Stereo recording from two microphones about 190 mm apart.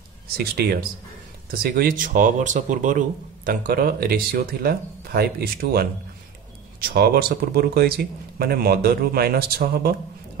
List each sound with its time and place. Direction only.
0.4 s speech: 55° right (ahead or behind)
3.4 s speech: 50° right (ahead or behind)